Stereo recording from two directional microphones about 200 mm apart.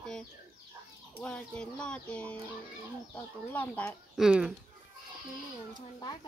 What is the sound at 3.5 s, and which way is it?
Speech, 10° left (ahead or behind).